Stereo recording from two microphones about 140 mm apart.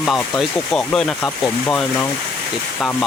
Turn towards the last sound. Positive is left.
turn(degrees=15)  # may be behind; listen again after turning